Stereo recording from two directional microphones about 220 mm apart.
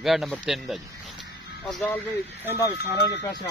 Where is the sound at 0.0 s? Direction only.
Centre (ahead or behind).